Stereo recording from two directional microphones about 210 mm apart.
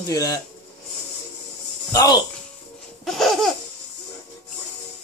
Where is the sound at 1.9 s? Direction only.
15° left (ahead or behind).